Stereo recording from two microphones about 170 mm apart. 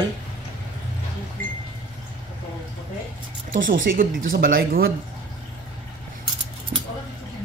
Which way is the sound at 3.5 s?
55° right (ahead or behind).